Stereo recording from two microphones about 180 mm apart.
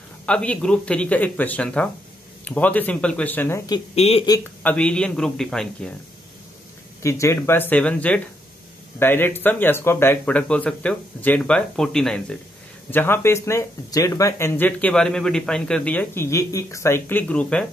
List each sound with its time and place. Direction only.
0.3 s speech: 5° left (ahead or behind)
3.9 s speech: 35° left (ahead or behind)
4.6 s a man's voice: 5° left (ahead or behind)
7.0 s speech: 15° left (ahead or behind)